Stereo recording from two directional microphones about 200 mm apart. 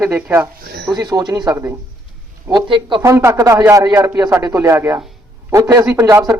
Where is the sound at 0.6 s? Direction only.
55° right (ahead or behind).